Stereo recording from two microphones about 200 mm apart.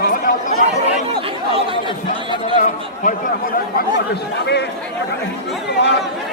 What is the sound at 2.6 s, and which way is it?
Speech, 40° left (ahead or behind).